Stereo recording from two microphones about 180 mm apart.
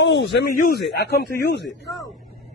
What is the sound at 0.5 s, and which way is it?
Speech, 50° left (ahead or behind).